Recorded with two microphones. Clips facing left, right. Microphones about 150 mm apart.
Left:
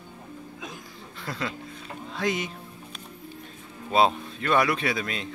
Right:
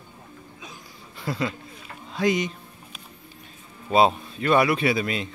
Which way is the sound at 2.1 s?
Centre (ahead or behind).